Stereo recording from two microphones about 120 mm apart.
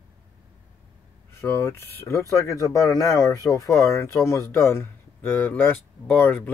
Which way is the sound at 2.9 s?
30° left (ahead or behind).